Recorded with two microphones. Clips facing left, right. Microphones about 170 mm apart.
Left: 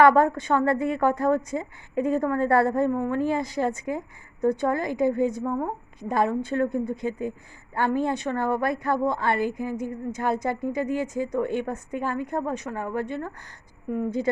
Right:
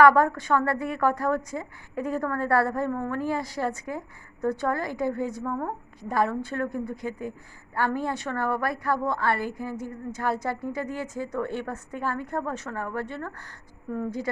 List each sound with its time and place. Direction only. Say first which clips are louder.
0.0 s a woman's voice: left 1 dB; 25° left (ahead or behind)